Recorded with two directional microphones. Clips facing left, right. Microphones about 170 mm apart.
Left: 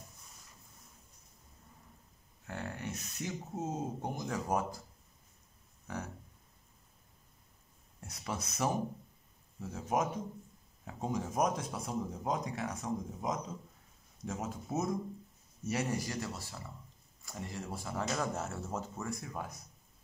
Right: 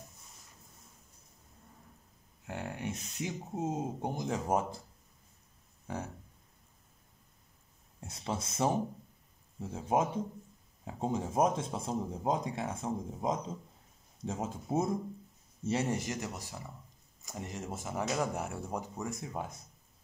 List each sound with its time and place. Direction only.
2.4 s speech: 15° right (ahead or behind)
8.1 s speech: 25° right (ahead or behind)